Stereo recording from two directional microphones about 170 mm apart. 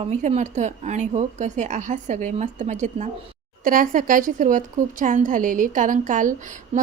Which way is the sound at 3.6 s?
55° right (ahead or behind).